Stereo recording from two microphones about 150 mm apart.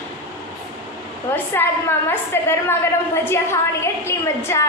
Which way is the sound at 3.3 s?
15° left (ahead or behind).